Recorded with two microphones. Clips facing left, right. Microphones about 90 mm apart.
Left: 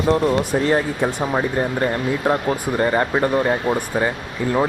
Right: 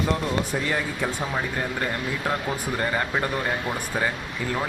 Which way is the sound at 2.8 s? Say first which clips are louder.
Left 8 dB; 30° left (ahead or behind).